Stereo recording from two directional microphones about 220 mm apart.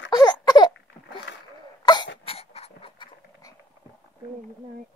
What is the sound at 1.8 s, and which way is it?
Cough, 20° left (ahead or behind).